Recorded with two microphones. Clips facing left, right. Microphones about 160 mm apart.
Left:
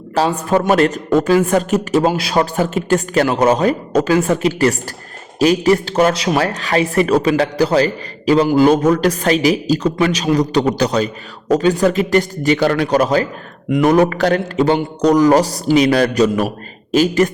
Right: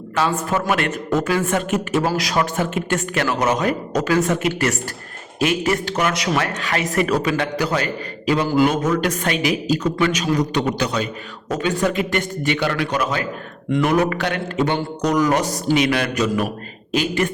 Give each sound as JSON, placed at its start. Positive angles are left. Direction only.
{"t": 0.1, "sound": "a woman's voice", "side_deg": 35}
{"t": 2.0, "sound": "a woman's voice", "side_deg": 25}